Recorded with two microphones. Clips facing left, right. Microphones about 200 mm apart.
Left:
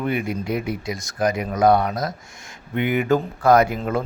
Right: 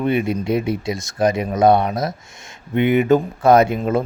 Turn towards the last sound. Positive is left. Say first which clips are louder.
# right 3 dB
turn(degrees=-25)  # may be behind; listen again after turning